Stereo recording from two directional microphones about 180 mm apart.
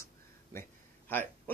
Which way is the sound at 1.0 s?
10° left (ahead or behind).